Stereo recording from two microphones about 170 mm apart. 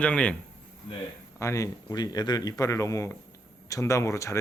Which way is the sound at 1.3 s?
15° left (ahead or behind).